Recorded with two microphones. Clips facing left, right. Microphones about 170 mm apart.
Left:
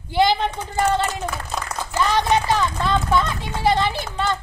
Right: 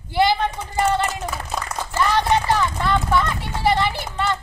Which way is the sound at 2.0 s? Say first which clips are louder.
Even; 15° left (ahead or behind).